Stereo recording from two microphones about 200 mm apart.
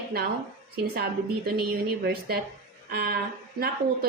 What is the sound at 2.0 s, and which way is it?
A woman's voice, 50° right (ahead or behind).